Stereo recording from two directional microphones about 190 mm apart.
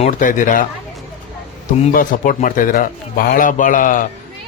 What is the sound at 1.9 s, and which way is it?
A man's voice, 45° left (ahead or behind).